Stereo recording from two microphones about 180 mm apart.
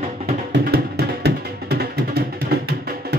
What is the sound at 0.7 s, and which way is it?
Music, 65° right (ahead or behind).